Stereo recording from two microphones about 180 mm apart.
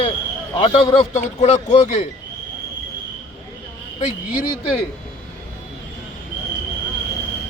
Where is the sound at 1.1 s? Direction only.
40° left (ahead or behind).